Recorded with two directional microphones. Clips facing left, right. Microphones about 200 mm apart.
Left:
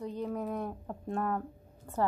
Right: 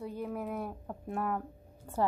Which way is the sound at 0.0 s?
5° right (ahead or behind).